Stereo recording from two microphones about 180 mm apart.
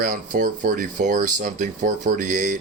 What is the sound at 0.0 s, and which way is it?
Speech, 50° right (ahead or behind).